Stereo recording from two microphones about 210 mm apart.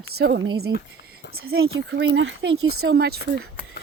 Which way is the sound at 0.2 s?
50° right (ahead or behind).